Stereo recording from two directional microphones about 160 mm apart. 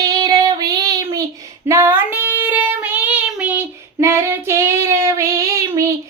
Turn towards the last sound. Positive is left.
turn(degrees=-20)  # may be behind; listen again after turning